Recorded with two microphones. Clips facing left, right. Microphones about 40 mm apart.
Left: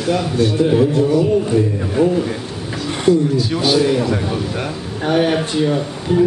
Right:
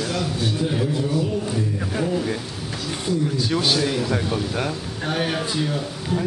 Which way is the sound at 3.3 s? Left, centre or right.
Centre.